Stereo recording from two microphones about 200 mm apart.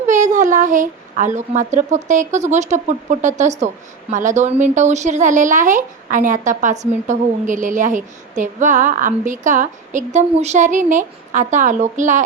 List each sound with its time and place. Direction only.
0.0 s a woman's voice: 40° right (ahead or behind)